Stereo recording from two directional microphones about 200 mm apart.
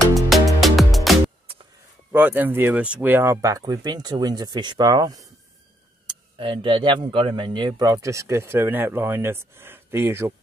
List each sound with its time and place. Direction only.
0.1 s music: centre (ahead or behind)
2.1 s speech: 10° right (ahead or behind)